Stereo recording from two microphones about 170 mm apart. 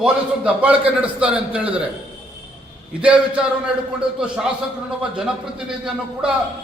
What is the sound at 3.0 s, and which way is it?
A man's voice, 5° right (ahead or behind).